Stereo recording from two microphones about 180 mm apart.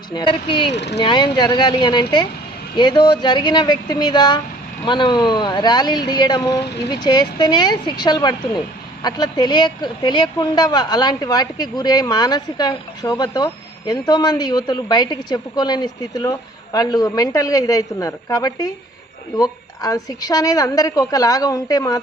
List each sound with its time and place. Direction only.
0.1 s speech: 25° left (ahead or behind)
0.7 s speech: 70° left (ahead or behind)
0.9 s speech: 25° left (ahead or behind)